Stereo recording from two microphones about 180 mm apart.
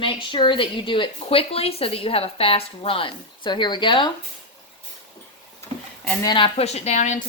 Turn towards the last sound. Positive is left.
turn(degrees=40)  # may be behind; listen again after turning